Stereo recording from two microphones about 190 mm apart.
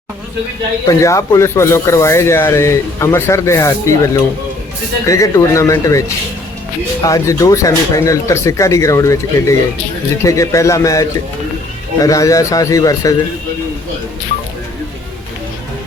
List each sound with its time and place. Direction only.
0.9 s speech: 15° left (ahead or behind)